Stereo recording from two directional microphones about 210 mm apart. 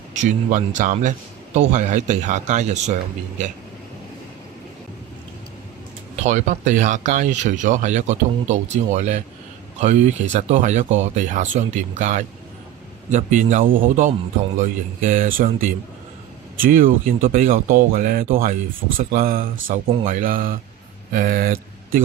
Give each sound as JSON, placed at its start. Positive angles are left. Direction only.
{"t": 0.1, "sound": "a man's voice", "side_deg": -35}
{"t": 6.2, "sound": "a man's voice", "side_deg": -35}
{"t": 16.6, "sound": "a man's voice", "side_deg": -40}
{"t": 19.7, "sound": "speech", "side_deg": -25}
{"t": 20.1, "sound": "a man's voice", "side_deg": -40}